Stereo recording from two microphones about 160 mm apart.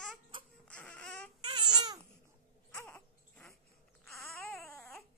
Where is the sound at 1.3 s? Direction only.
30° right (ahead or behind).